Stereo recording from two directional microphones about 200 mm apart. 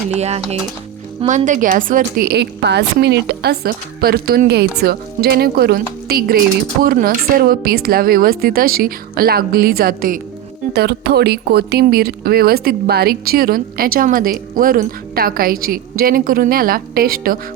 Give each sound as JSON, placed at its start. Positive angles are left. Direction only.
{"t": 0.1, "sound": "speech", "side_deg": -35}